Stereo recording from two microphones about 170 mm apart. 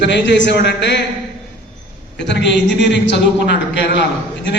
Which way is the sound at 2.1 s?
90° left.